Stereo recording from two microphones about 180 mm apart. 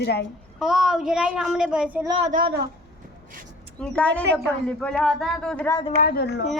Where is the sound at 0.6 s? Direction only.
Centre (ahead or behind).